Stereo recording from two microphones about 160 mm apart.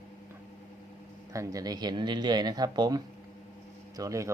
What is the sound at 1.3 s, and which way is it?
Speech, 20° right (ahead or behind).